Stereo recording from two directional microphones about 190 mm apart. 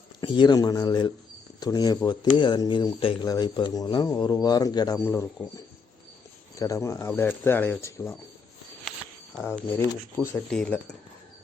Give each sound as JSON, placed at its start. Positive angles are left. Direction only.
{"t": 0.2, "sound": "speech", "side_deg": 25}
{"t": 6.6, "sound": "speech", "side_deg": 15}
{"t": 9.4, "sound": "speech", "side_deg": 15}